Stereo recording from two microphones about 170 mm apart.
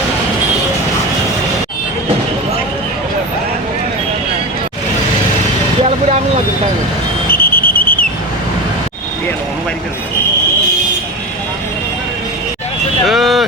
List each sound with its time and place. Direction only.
7.3 s whistle: 60° left (ahead or behind)
13.1 s vehicle: centre (ahead or behind)